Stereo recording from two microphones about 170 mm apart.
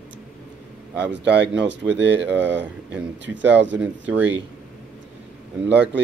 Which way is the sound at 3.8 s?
10° right (ahead or behind).